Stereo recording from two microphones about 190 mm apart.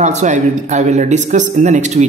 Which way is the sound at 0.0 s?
40° right (ahead or behind).